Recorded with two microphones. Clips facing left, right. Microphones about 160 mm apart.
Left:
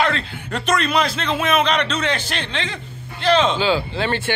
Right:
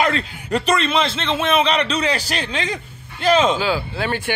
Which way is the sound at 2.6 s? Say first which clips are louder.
Right 3 dB; 45° right (ahead or behind).